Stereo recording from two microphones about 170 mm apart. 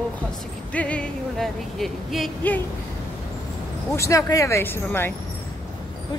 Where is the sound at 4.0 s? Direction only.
20° left (ahead or behind).